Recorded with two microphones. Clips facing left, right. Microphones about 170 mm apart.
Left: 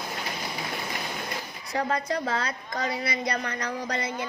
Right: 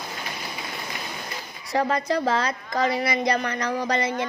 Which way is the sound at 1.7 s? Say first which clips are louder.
Right 4 dB; 90° right.